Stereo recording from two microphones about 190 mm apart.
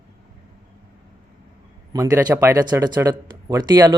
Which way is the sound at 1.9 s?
15° right (ahead or behind).